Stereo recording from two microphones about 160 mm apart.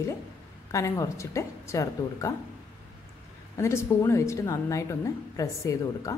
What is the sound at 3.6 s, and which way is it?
Speech, 15° left (ahead or behind).